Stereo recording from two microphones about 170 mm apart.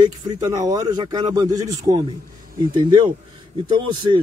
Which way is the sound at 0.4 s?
20° right (ahead or behind).